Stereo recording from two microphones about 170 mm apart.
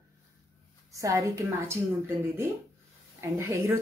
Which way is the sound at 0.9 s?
20° right (ahead or behind).